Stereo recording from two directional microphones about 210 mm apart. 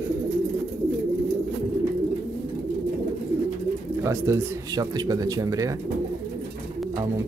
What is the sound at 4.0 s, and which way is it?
Speech, 15° right (ahead or behind).